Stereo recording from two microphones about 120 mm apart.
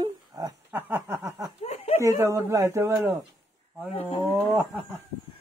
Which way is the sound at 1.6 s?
65° left (ahead or behind).